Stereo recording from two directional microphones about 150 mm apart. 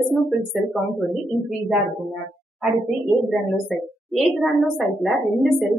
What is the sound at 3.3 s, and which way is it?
A woman's voice, centre (ahead or behind).